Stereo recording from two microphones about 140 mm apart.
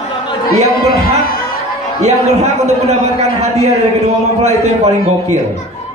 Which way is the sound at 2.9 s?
50° right (ahead or behind).